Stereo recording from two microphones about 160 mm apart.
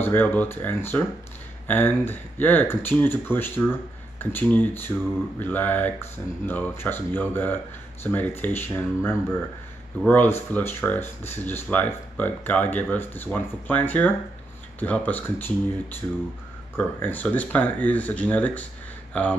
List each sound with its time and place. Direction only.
0.0 s speech: 10° left (ahead or behind)
16.7 s speech: 10° left (ahead or behind)